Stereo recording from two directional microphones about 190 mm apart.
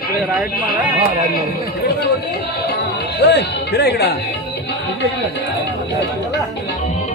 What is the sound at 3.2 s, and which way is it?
Speech, 65° left (ahead or behind).